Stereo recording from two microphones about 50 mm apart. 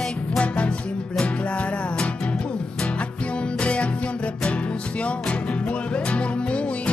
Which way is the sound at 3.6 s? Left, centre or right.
Left.